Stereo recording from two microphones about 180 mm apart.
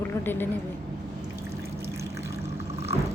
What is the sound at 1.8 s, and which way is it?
Water, 15° right (ahead or behind).